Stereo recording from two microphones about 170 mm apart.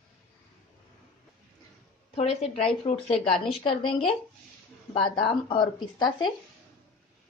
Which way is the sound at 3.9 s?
30° left (ahead or behind).